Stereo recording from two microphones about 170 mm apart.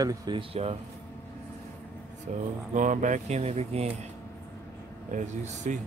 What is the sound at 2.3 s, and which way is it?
Speech, 45° right (ahead or behind).